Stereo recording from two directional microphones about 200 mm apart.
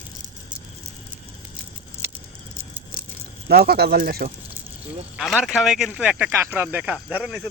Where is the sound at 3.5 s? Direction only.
50° right (ahead or behind).